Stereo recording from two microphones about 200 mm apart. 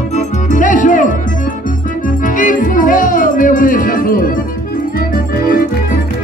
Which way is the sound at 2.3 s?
40° left (ahead or behind).